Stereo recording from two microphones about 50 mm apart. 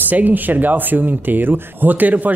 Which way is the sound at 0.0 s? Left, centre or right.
Right.